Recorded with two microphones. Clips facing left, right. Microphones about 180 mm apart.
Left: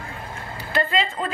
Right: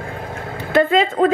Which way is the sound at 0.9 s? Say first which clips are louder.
Right 10 dB; 50° right (ahead or behind).